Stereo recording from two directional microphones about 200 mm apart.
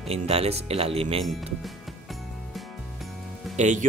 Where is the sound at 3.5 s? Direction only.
35° right (ahead or behind).